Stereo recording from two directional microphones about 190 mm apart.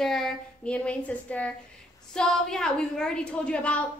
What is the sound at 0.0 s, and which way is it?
A woman's voice, centre (ahead or behind).